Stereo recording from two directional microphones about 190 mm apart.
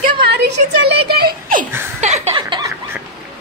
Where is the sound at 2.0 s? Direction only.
35° right (ahead or behind).